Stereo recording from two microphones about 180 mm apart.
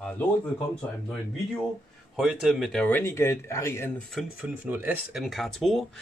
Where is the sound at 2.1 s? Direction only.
Centre (ahead or behind); by 3.9 s 15° left (ahead or behind).